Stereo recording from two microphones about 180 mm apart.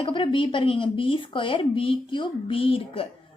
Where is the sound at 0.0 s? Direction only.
30° left (ahead or behind).